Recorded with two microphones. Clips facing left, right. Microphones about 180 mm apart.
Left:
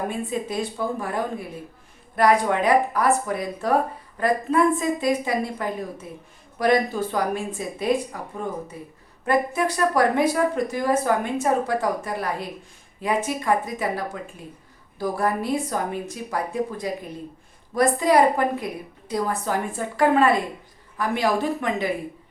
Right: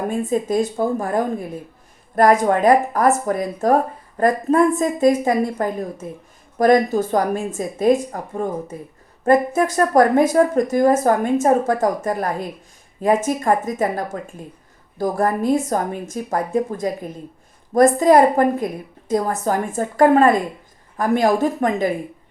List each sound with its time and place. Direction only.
0.1 s speech: 45° right (ahead or behind)